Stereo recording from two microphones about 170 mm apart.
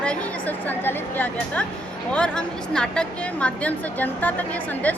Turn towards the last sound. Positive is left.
turn(degrees=10)  # may be behind; listen again after turning